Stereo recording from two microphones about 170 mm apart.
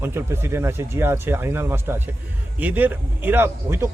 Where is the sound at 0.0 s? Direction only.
15° right (ahead or behind).